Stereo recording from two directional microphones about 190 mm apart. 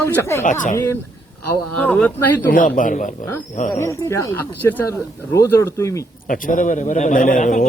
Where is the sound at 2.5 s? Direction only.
45° left (ahead or behind).